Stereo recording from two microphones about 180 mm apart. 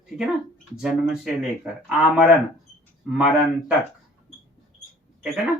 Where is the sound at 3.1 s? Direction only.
5° right (ahead or behind).